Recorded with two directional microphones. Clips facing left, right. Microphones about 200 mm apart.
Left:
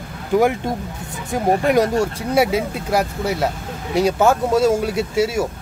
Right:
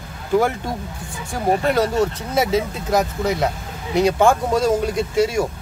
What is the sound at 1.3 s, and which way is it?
Speech, 15° left (ahead or behind).